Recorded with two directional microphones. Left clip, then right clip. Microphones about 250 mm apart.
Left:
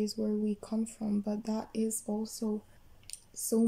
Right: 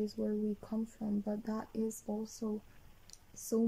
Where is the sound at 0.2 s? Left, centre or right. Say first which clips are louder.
Left 3 dB; left.